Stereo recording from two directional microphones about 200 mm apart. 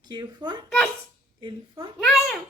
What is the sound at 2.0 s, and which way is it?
Speech, centre (ahead or behind).